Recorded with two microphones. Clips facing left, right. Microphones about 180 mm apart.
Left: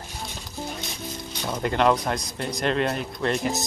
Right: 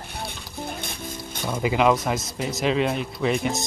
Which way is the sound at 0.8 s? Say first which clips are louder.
Even; 55° right (ahead or behind).